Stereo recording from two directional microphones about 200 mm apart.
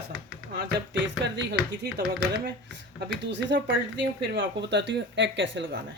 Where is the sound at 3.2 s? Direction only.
60° right (ahead or behind).